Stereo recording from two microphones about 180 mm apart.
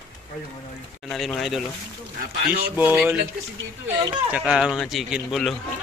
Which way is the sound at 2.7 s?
10° right (ahead or behind).